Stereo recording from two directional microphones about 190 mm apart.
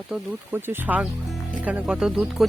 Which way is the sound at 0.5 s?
10° right (ahead or behind).